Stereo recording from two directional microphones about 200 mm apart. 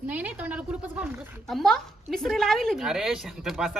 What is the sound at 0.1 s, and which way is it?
A woman's voice, 10° right (ahead or behind).